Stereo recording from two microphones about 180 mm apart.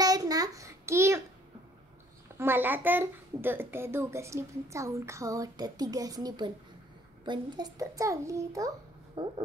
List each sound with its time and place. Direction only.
0.0 s child singing: 20° right (ahead or behind)
2.3 s a child's voice: 10° right (ahead or behind)